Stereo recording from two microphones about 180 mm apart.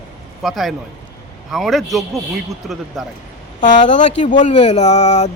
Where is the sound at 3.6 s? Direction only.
45° left (ahead or behind).